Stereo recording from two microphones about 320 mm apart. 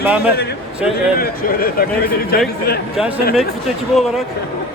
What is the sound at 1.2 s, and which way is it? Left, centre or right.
Speech, left.